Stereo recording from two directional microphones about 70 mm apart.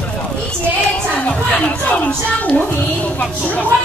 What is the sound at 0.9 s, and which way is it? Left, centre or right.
Speech, centre.